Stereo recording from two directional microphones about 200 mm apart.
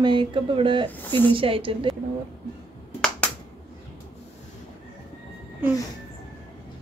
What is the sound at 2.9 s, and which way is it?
Finger snapping, 5° left (ahead or behind).